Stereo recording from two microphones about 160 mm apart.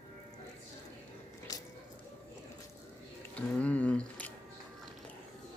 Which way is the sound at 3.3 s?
10° left (ahead or behind).